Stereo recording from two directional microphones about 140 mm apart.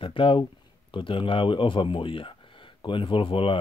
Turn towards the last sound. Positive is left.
turn(degrees=40)  # may be behind; listen again after turning